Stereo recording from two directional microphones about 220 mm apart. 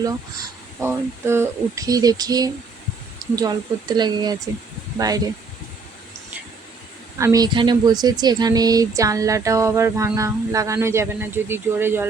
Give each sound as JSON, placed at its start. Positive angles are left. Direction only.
{"t": 0.8, "sound": "speech", "side_deg": -10}
{"t": 7.2, "sound": "speech", "side_deg": -15}